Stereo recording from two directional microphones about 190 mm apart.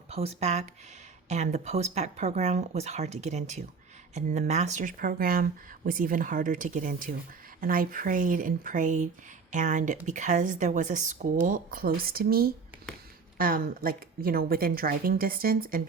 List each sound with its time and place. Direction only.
0.1 s speech: 35° right (ahead or behind); by 15.8 s 50° right (ahead or behind)